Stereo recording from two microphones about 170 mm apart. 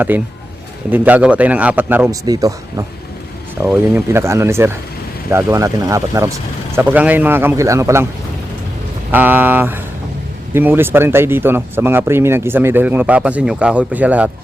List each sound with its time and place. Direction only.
0.1 s speech: 10° right (ahead or behind)
9.1 s speech: 10° right (ahead or behind)